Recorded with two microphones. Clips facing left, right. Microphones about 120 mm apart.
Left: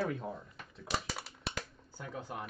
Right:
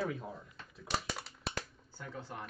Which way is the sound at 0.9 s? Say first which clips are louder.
Even; centre (ahead or behind).